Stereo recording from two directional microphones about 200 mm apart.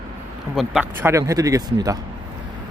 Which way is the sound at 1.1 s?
15° right (ahead or behind).